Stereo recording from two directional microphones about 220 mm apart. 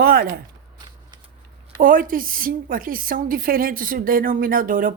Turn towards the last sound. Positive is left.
turn(degrees=-40)  # may be behind; listen again after turning